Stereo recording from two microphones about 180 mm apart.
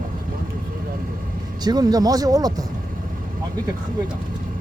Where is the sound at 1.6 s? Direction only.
20° right (ahead or behind).